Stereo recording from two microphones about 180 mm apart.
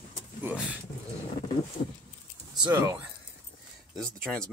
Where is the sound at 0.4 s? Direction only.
10° right (ahead or behind).